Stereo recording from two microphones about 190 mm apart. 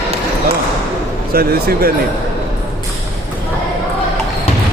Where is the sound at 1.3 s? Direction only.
55° right (ahead or behind).